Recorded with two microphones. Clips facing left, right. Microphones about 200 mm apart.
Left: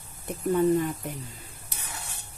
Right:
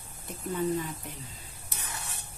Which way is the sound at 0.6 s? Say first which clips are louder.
Left 7 dB; 55° left (ahead or behind).